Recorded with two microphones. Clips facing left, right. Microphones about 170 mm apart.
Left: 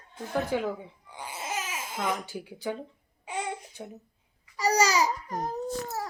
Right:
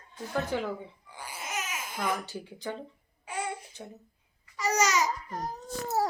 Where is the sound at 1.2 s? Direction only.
25° left (ahead or behind).